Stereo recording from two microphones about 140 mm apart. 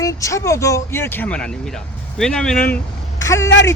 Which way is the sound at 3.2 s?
20° left (ahead or behind).